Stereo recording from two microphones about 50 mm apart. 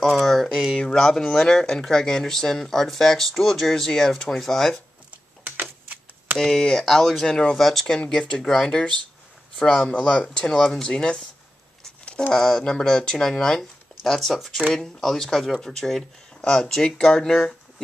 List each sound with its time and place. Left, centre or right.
0.2 s speech: centre
0.7 s speech: centre
5.6 s a sound: right
6.3 s speech: centre
7.5 s speech: centre
7.8 s speech: centre